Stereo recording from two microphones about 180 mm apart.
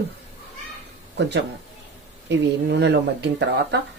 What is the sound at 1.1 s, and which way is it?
Speech, 70° right (ahead or behind).